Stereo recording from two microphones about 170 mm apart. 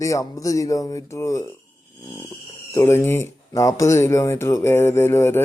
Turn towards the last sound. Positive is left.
turn(degrees=15)  # may be behind; listen again after turning